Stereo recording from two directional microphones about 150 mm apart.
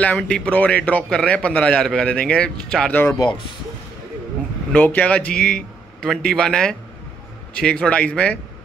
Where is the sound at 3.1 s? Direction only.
30° left (ahead or behind).